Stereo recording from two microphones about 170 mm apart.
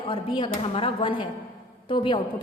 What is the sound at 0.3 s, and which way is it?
A woman's voice, 30° left (ahead or behind).